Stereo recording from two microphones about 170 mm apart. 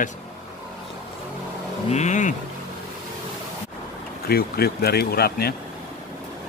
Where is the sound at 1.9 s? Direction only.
45° left (ahead or behind).